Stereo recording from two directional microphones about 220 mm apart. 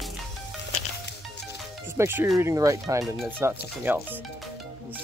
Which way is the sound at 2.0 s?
10° right (ahead or behind).